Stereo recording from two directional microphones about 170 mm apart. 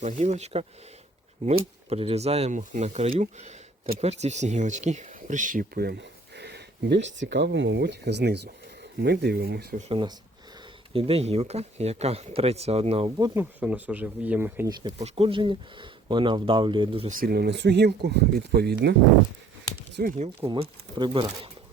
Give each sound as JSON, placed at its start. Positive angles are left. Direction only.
{"t": 0.0, "sound": "speech", "side_deg": -45}
{"t": 1.9, "sound": "speech", "side_deg": -35}
{"t": 9.9, "sound": "speech", "side_deg": -25}
{"t": 13.1, "sound": "speech", "side_deg": -25}
{"t": 13.4, "sound": "speech", "side_deg": -10}
{"t": 14.7, "sound": "speech", "side_deg": -25}
{"t": 14.9, "sound": "speech", "side_deg": -35}
{"t": 17.1, "sound": "speech", "side_deg": -60}
{"t": 20.0, "sound": "speech", "side_deg": -55}
{"t": 20.5, "sound": "speech", "side_deg": -25}